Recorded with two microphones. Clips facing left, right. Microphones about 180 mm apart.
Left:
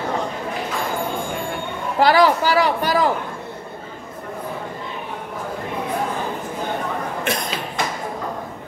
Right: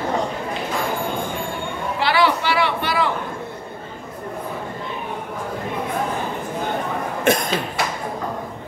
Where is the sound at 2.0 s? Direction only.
40° left (ahead or behind).